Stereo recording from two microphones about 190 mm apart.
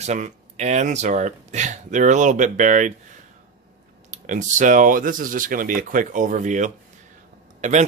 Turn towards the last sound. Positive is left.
turn(degrees=-40)  # may be behind; listen again after turning